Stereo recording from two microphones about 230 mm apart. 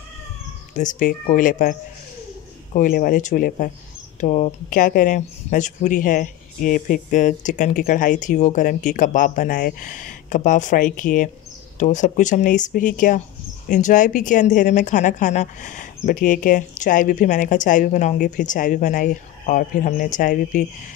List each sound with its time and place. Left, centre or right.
0.7 s speech: left